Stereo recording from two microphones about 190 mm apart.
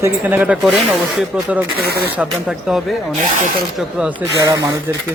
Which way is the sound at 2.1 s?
Centre (ahead or behind).